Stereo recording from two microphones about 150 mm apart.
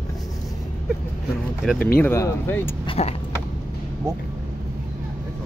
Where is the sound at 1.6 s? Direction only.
10° left (ahead or behind).